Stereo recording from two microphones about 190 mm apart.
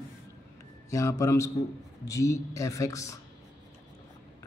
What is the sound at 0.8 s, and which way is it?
A man's voice, 15° left (ahead or behind).